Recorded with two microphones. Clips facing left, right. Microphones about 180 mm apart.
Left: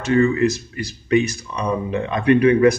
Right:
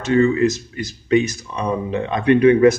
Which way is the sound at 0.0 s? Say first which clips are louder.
Right 1 dB; 20° right (ahead or behind).